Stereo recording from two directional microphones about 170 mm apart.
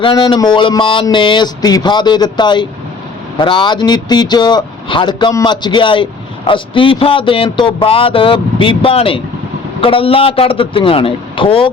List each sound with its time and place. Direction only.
0.0 s a man's voice: 25° left (ahead or behind)